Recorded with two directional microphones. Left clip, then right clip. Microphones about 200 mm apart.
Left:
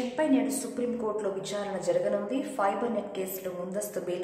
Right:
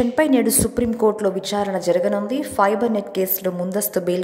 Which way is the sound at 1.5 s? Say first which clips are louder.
Right 8 dB; 40° right (ahead or behind).